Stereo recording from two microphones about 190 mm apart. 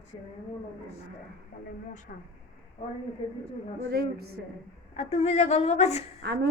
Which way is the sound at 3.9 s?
55° right (ahead or behind).